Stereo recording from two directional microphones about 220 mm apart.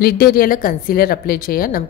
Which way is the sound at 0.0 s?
40° left (ahead or behind).